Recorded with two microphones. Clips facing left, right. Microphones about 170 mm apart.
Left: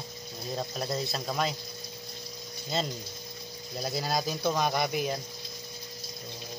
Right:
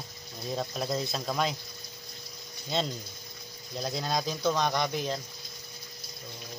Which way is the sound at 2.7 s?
Centre (ahead or behind).